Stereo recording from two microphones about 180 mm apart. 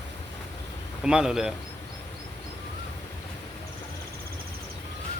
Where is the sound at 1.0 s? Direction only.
5° right (ahead or behind).